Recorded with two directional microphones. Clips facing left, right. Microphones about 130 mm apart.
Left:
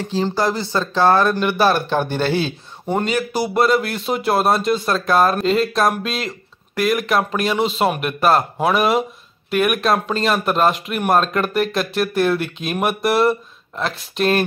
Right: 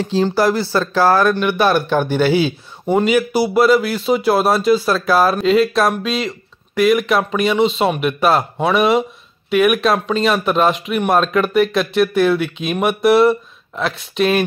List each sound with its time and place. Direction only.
0.2 s speech: 20° left (ahead or behind)
1.0 s a man's voice: centre (ahead or behind)